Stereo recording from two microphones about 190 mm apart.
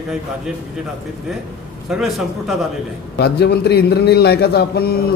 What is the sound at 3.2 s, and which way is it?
A man's voice, 60° left (ahead or behind).